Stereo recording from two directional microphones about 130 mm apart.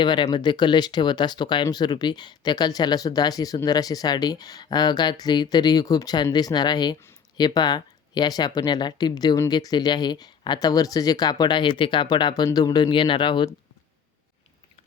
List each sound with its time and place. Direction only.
0.0 s speech: 35° left (ahead or behind)